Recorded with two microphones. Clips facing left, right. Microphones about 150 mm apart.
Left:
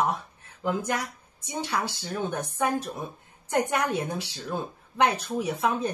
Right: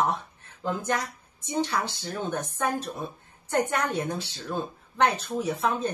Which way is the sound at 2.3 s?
10° left (ahead or behind).